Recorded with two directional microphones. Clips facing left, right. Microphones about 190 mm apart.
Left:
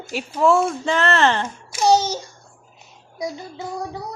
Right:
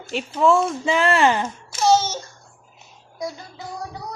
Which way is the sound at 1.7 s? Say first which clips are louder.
Left 1 dB; 15° left (ahead or behind).